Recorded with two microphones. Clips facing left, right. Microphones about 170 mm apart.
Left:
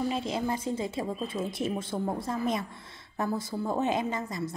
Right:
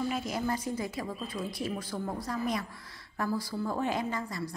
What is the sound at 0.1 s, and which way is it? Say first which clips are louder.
A woman's voice: left 2 dB; 25° left (ahead or behind).